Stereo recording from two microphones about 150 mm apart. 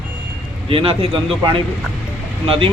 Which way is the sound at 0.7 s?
35° right (ahead or behind).